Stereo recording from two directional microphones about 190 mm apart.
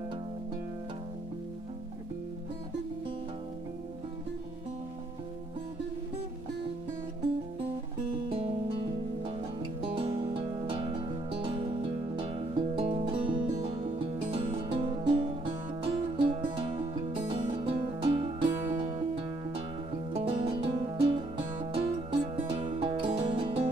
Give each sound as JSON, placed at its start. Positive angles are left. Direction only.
{"t": 8.3, "sound": "music", "side_deg": -30}
{"t": 18.5, "sound": "music", "side_deg": -15}
{"t": 18.8, "sound": "music", "side_deg": -25}